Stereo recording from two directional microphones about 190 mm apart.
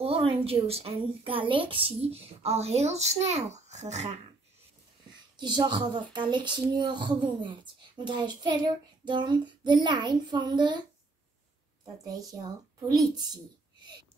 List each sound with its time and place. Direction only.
0.0 s a woman's voice: 30° right (ahead or behind)
5.4 s speech: 25° right (ahead or behind)
11.8 s speech: 20° right (ahead or behind)